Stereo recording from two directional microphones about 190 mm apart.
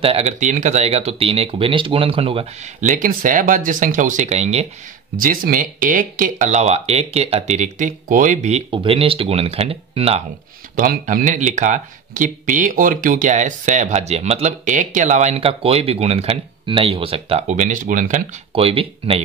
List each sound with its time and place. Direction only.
0.0 s speech: 35° right (ahead or behind)
5.1 s speech: 45° right (ahead or behind); by 10.2 s 30° right (ahead or behind)
10.8 s speech: 50° right (ahead or behind); by 19.2 s 30° right (ahead or behind)